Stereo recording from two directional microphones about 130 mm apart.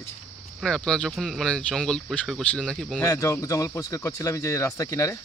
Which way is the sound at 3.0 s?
25° left (ahead or behind).